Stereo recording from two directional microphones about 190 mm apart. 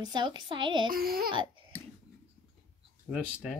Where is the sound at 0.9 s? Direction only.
50° right (ahead or behind).